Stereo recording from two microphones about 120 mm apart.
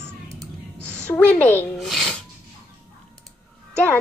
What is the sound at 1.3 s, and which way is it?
Music, 15° left (ahead or behind).